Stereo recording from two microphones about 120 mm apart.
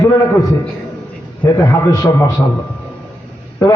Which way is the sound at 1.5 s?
35° left (ahead or behind).